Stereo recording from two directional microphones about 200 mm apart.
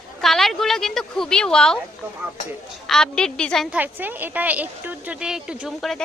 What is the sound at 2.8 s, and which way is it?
A woman's voice, centre (ahead or behind).